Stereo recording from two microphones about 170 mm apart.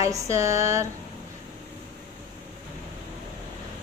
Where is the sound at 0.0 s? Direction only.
15° right (ahead or behind).